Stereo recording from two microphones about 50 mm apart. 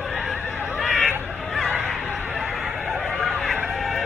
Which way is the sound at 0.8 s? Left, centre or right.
Centre.